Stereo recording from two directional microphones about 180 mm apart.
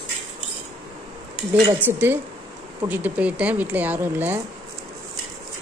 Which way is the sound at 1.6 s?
10° right (ahead or behind).